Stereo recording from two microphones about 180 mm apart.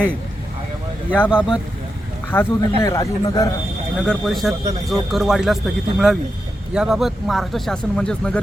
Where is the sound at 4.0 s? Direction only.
5° left (ahead or behind).